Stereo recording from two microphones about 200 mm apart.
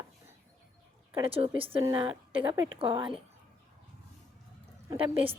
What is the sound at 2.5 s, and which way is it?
Speech, 25° right (ahead or behind).